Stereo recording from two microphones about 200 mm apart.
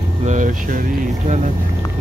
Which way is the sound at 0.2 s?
40° right (ahead or behind).